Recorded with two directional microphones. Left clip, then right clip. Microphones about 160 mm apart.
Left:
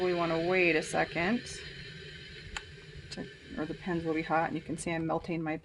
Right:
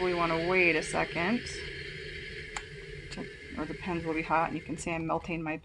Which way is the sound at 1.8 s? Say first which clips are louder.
Right 6 dB; 25° right (ahead or behind).